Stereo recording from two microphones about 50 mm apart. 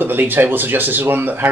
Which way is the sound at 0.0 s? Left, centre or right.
Right.